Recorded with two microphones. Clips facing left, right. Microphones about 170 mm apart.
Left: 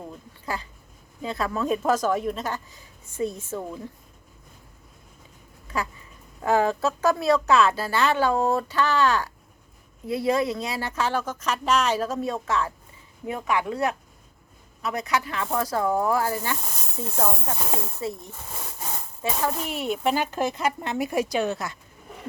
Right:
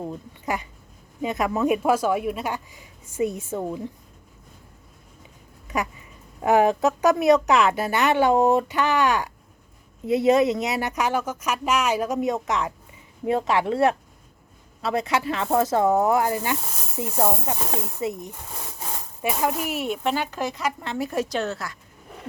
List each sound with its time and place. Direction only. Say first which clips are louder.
0.0 s a woman's voice: right 6 dB; 20° right (ahead or behind)
5.6 s a woman's voice: right 3 dB; 20° right (ahead or behind); by 20.1 s centre (ahead or behind)
20.6 s a woman's voice: left 1 dB; 20° left (ahead or behind)